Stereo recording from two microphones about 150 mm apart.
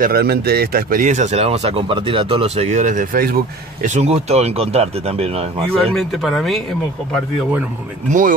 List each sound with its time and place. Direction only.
0.0 s speech: 90° right
3.9 s speech: 45° right (ahead or behind)
5.7 s speech: centre (ahead or behind)